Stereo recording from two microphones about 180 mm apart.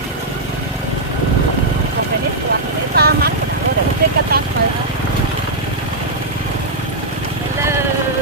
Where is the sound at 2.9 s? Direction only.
60° right (ahead or behind).